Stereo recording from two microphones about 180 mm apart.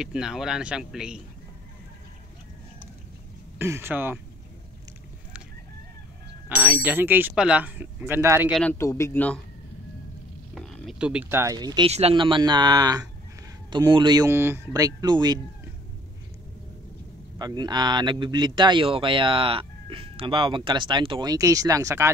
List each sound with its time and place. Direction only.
0.0 s speech: 5° right (ahead or behind)
3.5 s speech: 15° right (ahead or behind)
6.5 s speech: 10° right (ahead or behind)
8.5 s speech: centre (ahead or behind)
8.7 s speech: 15° left (ahead or behind)
10.5 s speech: 5° left (ahead or behind); by 11.9 s 25° right (ahead or behind)
11.9 s speech: 35° right (ahead or behind)
17.4 s speech: 25° right (ahead or behind)